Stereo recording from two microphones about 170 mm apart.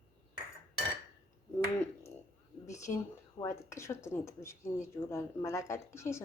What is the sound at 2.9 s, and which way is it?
Speech, 35° left (ahead or behind).